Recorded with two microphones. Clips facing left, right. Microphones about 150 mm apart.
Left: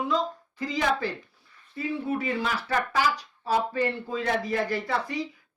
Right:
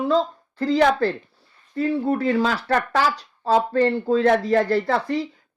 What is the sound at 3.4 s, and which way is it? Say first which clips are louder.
A woman's voice: right 8 dB; 85° right.